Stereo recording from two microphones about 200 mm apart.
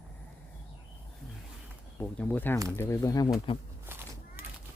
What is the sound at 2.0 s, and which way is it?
Speech, 10° left (ahead or behind).